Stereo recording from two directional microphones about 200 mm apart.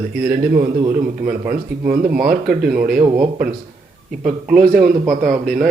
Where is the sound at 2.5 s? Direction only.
5° right (ahead or behind).